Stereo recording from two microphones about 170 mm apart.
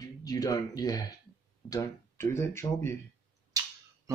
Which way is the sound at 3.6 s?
20° right (ahead or behind).